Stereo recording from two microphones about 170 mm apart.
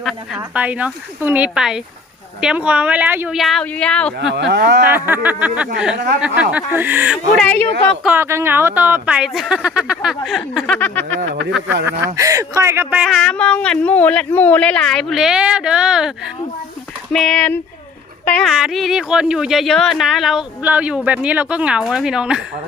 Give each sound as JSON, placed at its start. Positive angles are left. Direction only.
{"t": 0.0, "sound": "speech", "side_deg": -5}
{"t": 4.2, "sound": "speech", "side_deg": -90}
{"t": 4.9, "sound": "speech", "side_deg": -10}
{"t": 7.3, "sound": "speech", "side_deg": 10}
{"t": 8.0, "sound": "speech", "side_deg": -10}
{"t": 10.8, "sound": "speech", "side_deg": 10}
{"t": 11.9, "sound": "speech", "side_deg": -20}
{"t": 13.1, "sound": "speech", "side_deg": 5}